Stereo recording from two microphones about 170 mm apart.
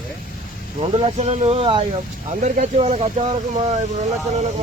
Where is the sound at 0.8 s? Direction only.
35° right (ahead or behind).